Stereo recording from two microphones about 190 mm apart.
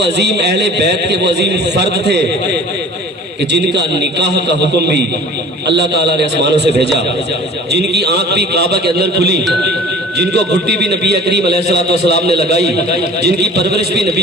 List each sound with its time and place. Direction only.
0.0 s a man's voice: 65° right (ahead or behind)